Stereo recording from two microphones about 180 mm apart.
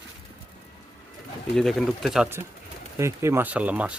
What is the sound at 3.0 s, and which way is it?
Speech, 15° right (ahead or behind).